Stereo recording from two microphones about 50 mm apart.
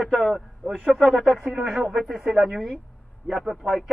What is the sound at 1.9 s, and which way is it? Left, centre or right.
Speech, centre.